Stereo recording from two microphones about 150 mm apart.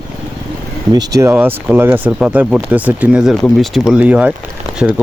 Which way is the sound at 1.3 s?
15° right (ahead or behind).